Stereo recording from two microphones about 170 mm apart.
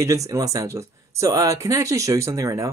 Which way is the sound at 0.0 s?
20° right (ahead or behind).